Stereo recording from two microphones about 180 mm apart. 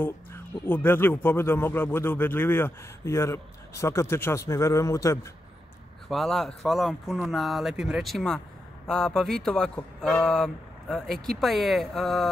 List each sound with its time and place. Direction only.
0.0 s speech: 10° left (ahead or behind)
6.0 s speech: centre (ahead or behind)